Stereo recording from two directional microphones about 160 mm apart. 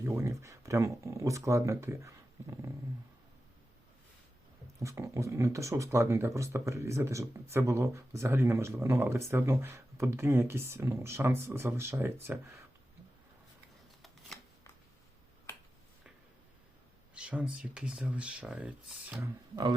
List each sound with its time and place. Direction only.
0.0 s speech: 15° right (ahead or behind)
4.8 s speech: 20° right (ahead or behind)
17.2 s speech: 5° right (ahead or behind)